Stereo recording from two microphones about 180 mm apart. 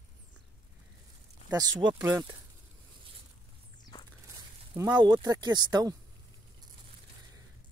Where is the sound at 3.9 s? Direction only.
25° left (ahead or behind).